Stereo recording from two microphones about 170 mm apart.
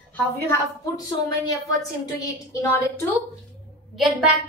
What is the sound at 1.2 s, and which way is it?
A woman's voice, 20° left (ahead or behind).